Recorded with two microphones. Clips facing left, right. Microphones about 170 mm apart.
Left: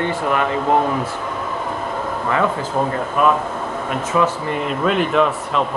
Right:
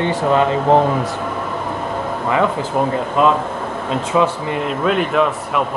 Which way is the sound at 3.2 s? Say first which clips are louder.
Right 1 dB; 20° right (ahead or behind).